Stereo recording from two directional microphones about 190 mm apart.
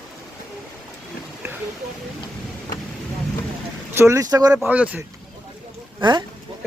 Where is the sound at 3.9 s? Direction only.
15° right (ahead or behind).